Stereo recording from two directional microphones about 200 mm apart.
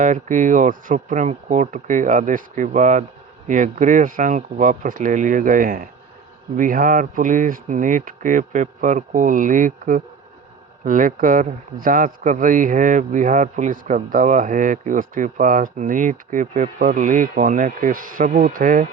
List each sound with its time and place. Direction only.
0.0 s a man's voice: 40° right (ahead or behind)